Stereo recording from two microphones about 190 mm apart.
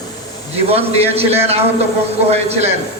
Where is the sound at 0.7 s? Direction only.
30° right (ahead or behind).